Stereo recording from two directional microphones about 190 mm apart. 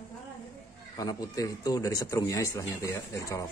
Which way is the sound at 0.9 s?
20° left (ahead or behind).